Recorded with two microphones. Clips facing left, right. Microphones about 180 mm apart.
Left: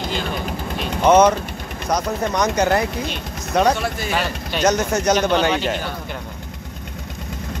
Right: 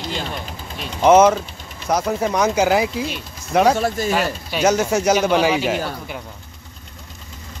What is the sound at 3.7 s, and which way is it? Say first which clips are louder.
Speech: right 4 dB; 45° right (ahead or behind).